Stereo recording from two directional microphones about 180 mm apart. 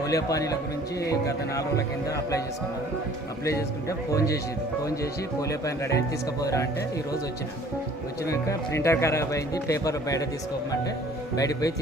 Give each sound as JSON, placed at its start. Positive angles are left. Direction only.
{"t": 0.0, "sound": "speech", "side_deg": 20}
{"t": 3.4, "sound": "speech", "side_deg": 15}
{"t": 5.4, "sound": "speech", "side_deg": 15}
{"t": 8.2, "sound": "speech", "side_deg": 15}
{"t": 11.3, "sound": "speech", "side_deg": 20}